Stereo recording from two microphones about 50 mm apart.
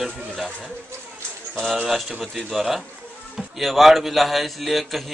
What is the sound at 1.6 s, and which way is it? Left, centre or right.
Speech, centre.